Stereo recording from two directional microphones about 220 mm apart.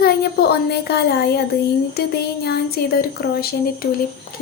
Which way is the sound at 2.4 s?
45° left (ahead or behind).